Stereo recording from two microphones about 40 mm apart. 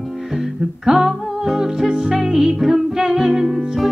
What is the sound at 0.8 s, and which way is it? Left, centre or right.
Music, centre.